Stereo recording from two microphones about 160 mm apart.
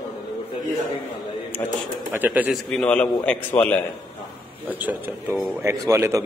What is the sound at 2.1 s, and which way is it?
Speech, 10° right (ahead or behind).